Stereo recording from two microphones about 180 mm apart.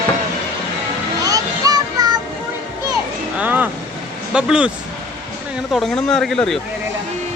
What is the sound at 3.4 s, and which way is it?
Speech, 10° right (ahead or behind).